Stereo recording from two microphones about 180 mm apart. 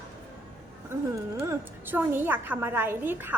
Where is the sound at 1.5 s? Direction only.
10° right (ahead or behind).